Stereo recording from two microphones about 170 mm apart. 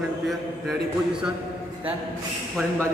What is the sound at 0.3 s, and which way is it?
A man's voice, centre (ahead or behind).